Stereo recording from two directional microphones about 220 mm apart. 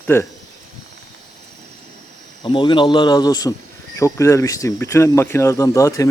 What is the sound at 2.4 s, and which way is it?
Speech, 20° left (ahead or behind).